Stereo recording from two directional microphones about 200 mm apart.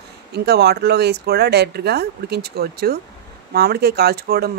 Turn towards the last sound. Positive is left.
turn(degrees=-50)  # may be behind; listen again after turning